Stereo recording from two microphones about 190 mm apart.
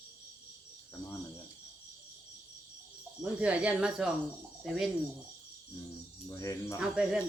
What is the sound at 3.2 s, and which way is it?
Speech, 5° right (ahead or behind).